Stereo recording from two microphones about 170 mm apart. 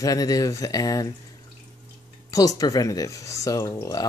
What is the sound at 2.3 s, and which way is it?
Speech, 20° left (ahead or behind).